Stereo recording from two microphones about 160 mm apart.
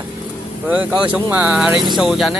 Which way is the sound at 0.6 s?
10° right (ahead or behind).